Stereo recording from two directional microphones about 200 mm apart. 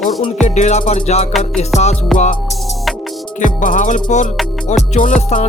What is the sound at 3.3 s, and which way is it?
Music, 40° left (ahead or behind).